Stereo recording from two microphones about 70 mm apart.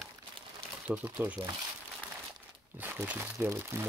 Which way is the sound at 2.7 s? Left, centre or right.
Right.